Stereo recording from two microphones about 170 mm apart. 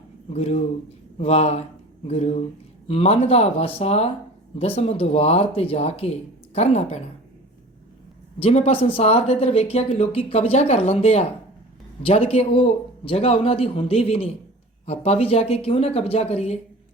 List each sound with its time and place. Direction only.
0.3 s speech: 40° left (ahead or behind)
8.4 s speech: 40° left (ahead or behind)